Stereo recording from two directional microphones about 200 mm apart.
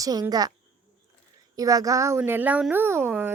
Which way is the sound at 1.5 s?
15° right (ahead or behind).